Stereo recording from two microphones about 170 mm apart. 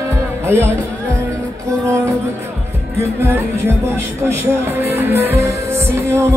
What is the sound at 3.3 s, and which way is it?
Music, 15° right (ahead or behind).